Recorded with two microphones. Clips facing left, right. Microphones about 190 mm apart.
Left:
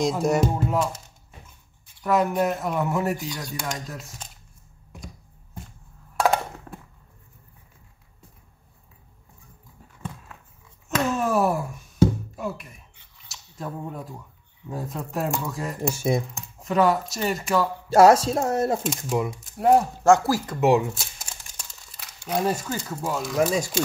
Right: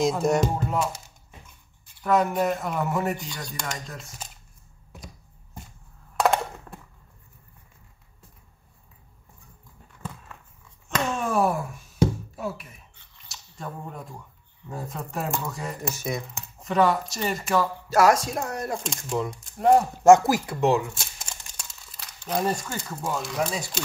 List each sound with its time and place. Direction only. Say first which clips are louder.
0.0 s speech: even; centre (ahead or behind)
2.0 s speech: left 1 dB; centre (ahead or behind)
4.9 s a sound: left 2 dB; 5° right (ahead or behind)
6.1 s a sound: even; centre (ahead or behind)
10.9 s a sound: left 3 dB; centre (ahead or behind)
12.4 s beatboxing: left 1 dB; centre (ahead or behind)
13.3 s speech: left 3 dB; centre (ahead or behind)
15.9 s speech: left 9 dB; 30° left (ahead or behind)
16.3 s speech: left 2 dB; centre (ahead or behind)
17.8 s speech: left 7 dB; 30° left (ahead or behind)
18.8 s speech: left 3 dB; 5° left (ahead or behind)
20.0 s speech: right 3 dB; 20° right (ahead or behind)
20.9 s crumpling: left 1 dB; centre (ahead or behind)
23.3 s speech: left 10 dB; 45° left (ahead or behind)